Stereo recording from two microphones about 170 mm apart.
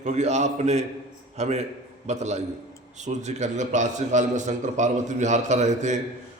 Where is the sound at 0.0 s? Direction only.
45° right (ahead or behind).